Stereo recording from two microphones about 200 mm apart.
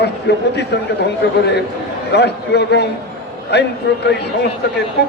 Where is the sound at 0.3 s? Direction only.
55° left (ahead or behind).